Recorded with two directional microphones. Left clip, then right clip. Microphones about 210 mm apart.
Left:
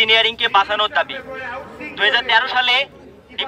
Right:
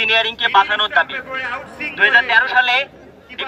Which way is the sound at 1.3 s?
20° right (ahead or behind).